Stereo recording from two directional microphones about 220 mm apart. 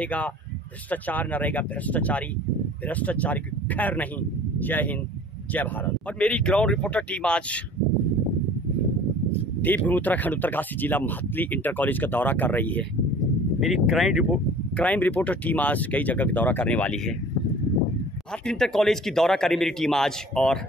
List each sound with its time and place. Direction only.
0.0 s speech: 5° left (ahead or behind)
6.1 s a man's voice: 5° left (ahead or behind)
9.6 s speech: 5° left (ahead or behind)
18.4 s a man's voice: 5° left (ahead or behind)